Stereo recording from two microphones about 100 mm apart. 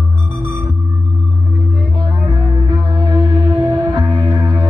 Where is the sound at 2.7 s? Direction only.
45° right (ahead or behind).